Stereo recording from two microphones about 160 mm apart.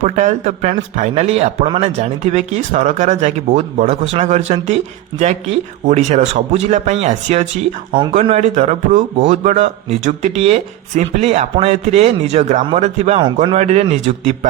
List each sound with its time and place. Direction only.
0.0 s speech: 50° right (ahead or behind)
13.2 s speech: 30° right (ahead or behind)
13.6 s speech: 45° right (ahead or behind)